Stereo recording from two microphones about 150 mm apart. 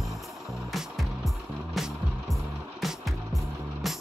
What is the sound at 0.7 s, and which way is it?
Music, centre (ahead or behind).